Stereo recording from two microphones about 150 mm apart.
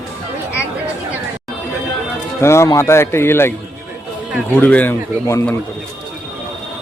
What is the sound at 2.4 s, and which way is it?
Speech, 20° left (ahead or behind).